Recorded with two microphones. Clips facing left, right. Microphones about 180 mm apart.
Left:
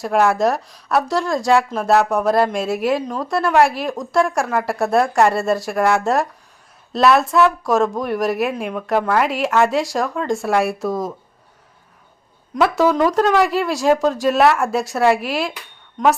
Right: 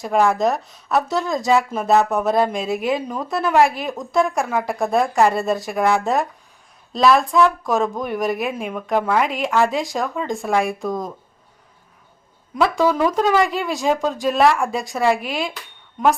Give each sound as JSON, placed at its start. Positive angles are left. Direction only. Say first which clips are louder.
{"t": 0.0, "sound": "speech", "louder": "left 1 dB", "side_deg": 0}
{"t": 12.5, "sound": "speech", "louder": "left 2 dB", "side_deg": 5}